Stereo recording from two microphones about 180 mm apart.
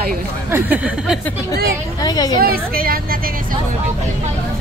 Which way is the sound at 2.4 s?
55° right (ahead or behind).